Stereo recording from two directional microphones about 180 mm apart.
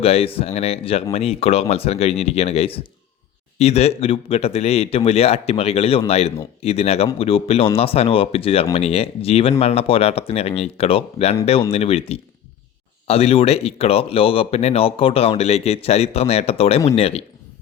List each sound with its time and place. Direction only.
0.0 s speech: 35° left (ahead or behind)